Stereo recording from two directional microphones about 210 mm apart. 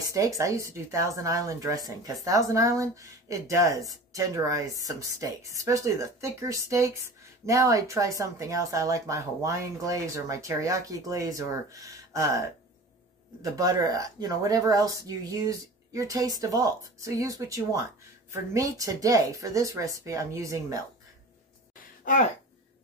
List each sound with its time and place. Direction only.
0.0 s a sound: 15° right (ahead or behind)
0.4 s speech: 15° right (ahead or behind)
22.0 s speech: 40° left (ahead or behind)